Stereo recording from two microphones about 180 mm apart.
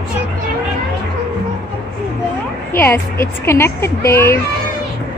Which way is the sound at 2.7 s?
15° left (ahead or behind).